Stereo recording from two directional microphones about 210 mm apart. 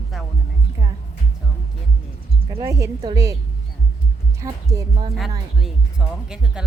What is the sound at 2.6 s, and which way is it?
Speech, 15° right (ahead or behind).